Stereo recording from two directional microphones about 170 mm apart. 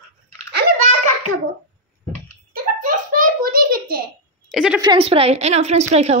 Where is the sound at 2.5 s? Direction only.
55° right (ahead or behind).